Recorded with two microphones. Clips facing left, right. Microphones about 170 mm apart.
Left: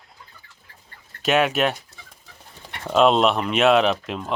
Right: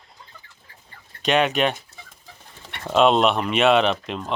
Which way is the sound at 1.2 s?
5° left (ahead or behind).